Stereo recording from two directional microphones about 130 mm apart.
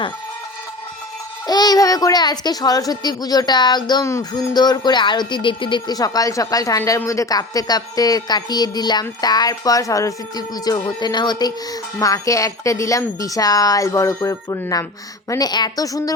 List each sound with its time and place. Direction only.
1.5 s a child's voice: 30° left (ahead or behind)